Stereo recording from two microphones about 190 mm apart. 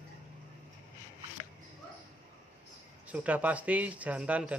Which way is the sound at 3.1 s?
10° right (ahead or behind).